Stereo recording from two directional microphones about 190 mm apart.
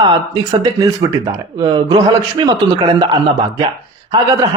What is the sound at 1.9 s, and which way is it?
Speech, 20° right (ahead or behind).